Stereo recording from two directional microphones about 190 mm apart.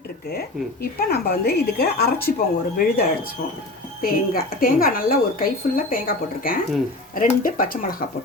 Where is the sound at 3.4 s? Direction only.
50° left (ahead or behind).